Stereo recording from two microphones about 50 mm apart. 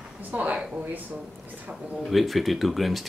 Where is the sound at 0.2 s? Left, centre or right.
Right.